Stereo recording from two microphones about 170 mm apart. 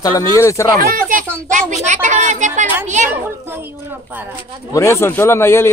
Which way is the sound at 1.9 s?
45° right (ahead or behind).